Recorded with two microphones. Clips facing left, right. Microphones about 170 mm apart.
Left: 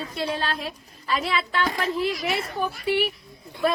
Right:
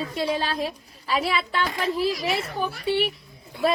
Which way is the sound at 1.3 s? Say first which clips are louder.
Even; 10° right (ahead or behind).